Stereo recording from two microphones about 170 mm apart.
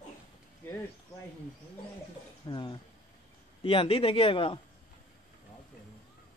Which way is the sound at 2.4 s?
25° left (ahead or behind).